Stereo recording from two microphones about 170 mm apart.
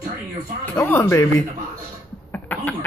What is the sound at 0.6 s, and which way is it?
Speech, 10° left (ahead or behind).